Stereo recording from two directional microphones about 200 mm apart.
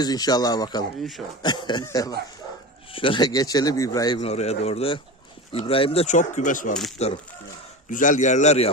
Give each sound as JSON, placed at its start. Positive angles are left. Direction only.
{"t": 0.0, "sound": "speech", "side_deg": 20}
{"t": 4.2, "sound": "speech", "side_deg": 30}